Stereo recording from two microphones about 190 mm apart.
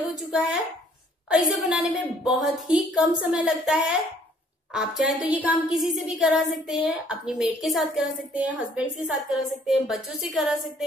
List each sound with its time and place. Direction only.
0.1 s a woman's voice: centre (ahead or behind)